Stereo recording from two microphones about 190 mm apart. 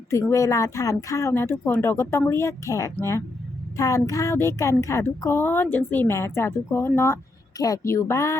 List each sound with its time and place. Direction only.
0.1 s a woman's voice: 15° left (ahead or behind)